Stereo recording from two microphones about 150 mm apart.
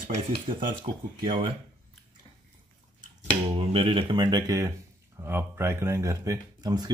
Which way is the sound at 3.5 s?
35° right (ahead or behind).